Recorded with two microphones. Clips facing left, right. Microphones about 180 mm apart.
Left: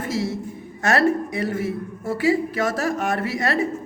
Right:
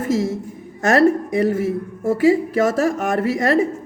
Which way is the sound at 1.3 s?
40° right (ahead or behind).